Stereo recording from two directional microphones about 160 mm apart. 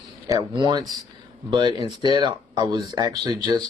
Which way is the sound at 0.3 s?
25° right (ahead or behind).